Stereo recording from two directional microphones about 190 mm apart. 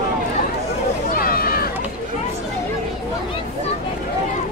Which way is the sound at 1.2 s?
50° left (ahead or behind).